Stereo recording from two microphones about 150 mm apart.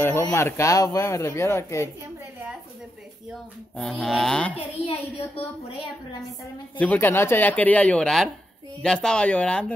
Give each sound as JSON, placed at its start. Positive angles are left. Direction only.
{"t": 0.3, "sound": "speech", "side_deg": 15}
{"t": 3.7, "sound": "a sound", "side_deg": 0}
{"t": 4.8, "sound": "a woman's voice", "side_deg": 40}
{"t": 6.8, "sound": "speech", "side_deg": 10}